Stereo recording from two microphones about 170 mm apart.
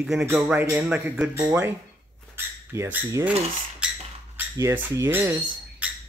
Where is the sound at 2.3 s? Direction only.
15° right (ahead or behind).